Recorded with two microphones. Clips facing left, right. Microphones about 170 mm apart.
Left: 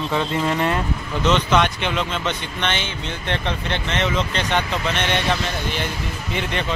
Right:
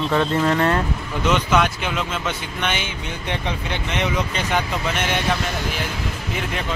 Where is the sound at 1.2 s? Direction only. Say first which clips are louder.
Left 1 dB; 10° right (ahead or behind).